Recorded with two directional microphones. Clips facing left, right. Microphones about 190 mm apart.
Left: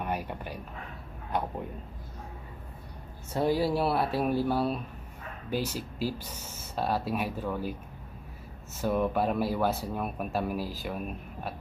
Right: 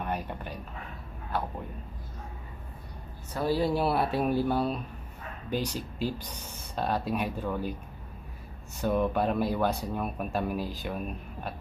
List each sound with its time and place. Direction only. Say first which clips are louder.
0.0 s speech: even; 10° left (ahead or behind)
3.3 s speech: left 1 dB; 15° left (ahead or behind)
3.6 s speech: right 1 dB; centre (ahead or behind)
8.8 s speech: right 1 dB; 5° left (ahead or behind)